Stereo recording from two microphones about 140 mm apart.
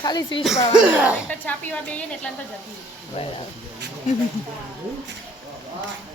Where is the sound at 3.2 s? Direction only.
45° left (ahead or behind).